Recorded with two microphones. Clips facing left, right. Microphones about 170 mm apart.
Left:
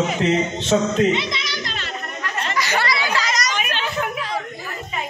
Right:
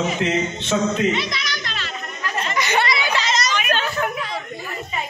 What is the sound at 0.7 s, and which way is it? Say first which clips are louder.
Speech: left 2 dB; 35° left (ahead or behind).